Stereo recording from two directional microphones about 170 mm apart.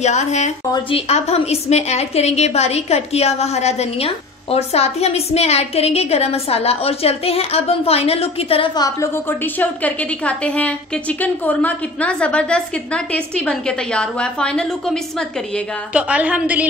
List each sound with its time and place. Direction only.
0.0 s a woman's voice: 40° left (ahead or behind)
8.8 s a woman's voice: 15° left (ahead or behind)
15.9 s a woman's voice: 10° right (ahead or behind)